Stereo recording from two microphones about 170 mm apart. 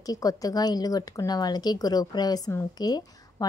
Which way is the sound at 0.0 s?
20° left (ahead or behind).